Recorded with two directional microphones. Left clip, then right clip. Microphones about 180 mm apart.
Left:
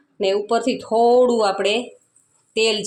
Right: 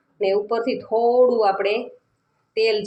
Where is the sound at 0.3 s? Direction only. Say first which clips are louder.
Left 2 dB; 40° left (ahead or behind).